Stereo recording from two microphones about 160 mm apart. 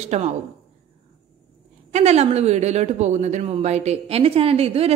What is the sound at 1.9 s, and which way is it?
Speech, 40° right (ahead or behind).